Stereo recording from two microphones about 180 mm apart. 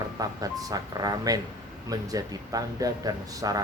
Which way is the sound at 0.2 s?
20° right (ahead or behind).